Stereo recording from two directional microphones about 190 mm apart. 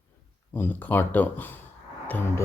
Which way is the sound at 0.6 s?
10° left (ahead or behind).